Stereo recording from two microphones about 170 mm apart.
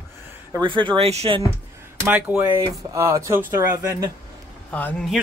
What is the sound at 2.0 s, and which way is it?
Speech, 5° right (ahead or behind).